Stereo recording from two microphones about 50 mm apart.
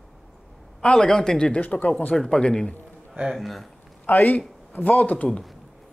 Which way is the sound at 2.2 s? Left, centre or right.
Centre.